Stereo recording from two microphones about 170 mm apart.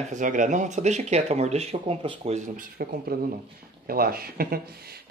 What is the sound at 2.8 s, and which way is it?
Speech, 65° right (ahead or behind).